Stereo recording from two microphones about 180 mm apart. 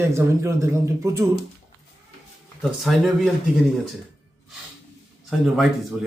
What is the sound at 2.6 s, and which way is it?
Speech, centre (ahead or behind).